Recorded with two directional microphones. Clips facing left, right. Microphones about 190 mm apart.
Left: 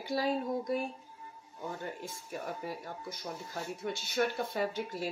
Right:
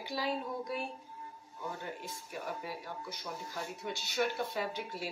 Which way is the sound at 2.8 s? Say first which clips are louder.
Left 1 dB; 45° left (ahead or behind).